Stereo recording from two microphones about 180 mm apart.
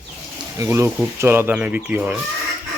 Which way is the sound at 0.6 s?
15° right (ahead or behind).